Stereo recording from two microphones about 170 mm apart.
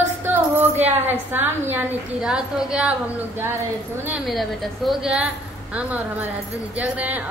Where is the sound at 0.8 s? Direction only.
10° right (ahead or behind).